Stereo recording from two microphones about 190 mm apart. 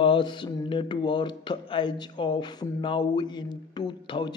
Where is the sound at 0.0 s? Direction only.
25° left (ahead or behind).